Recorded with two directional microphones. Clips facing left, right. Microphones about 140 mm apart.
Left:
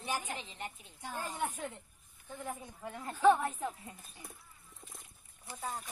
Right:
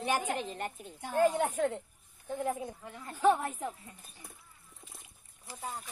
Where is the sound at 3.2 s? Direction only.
10° right (ahead or behind).